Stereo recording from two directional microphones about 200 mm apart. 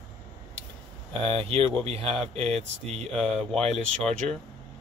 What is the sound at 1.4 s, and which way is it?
Speech, 25° right (ahead or behind).